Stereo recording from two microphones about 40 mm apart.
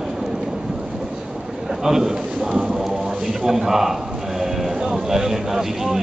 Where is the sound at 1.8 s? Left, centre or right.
Centre.